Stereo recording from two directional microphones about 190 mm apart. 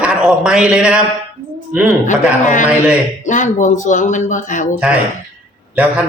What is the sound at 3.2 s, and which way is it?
Speech, 40° left (ahead or behind).